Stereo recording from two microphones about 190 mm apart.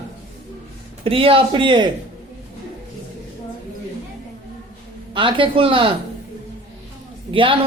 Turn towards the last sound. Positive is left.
turn(degrees=-30)  # may be behind; listen again after turning